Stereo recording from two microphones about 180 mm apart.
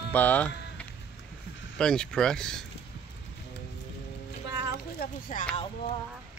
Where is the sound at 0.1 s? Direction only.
10° left (ahead or behind).